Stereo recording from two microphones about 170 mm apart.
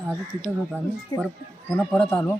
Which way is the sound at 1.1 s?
25° left (ahead or behind).